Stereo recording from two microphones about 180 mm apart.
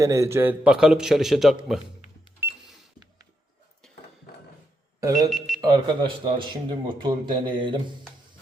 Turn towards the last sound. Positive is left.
turn(degrees=-25)  # may be behind; listen again after turning